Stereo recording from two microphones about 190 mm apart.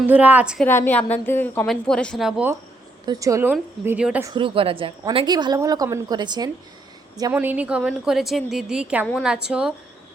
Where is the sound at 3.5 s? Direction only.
5° right (ahead or behind).